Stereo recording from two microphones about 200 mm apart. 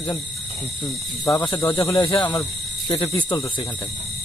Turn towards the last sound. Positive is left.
turn(degrees=20)  # may be behind; listen again after turning